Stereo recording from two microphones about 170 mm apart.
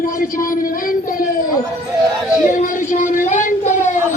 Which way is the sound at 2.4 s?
50° left (ahead or behind).